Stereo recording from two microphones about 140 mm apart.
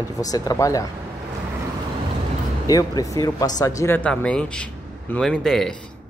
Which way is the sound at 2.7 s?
25° left (ahead or behind).